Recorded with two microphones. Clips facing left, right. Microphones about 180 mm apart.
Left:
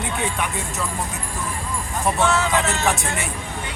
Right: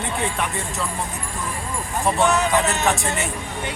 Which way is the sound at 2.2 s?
15° right (ahead or behind).